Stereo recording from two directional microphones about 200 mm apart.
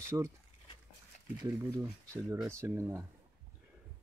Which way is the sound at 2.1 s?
10° right (ahead or behind).